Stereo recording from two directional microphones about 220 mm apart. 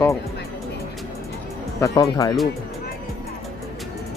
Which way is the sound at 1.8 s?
15° left (ahead or behind).